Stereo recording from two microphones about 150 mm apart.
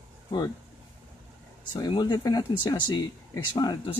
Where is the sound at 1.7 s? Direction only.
30° left (ahead or behind).